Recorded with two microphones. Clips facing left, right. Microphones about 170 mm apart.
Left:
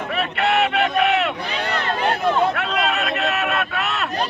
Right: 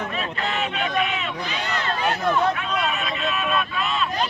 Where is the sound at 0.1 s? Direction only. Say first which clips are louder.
Left 7 dB; 70° left (ahead or behind).